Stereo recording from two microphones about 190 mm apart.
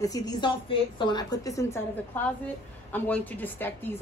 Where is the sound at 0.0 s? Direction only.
20° left (ahead or behind).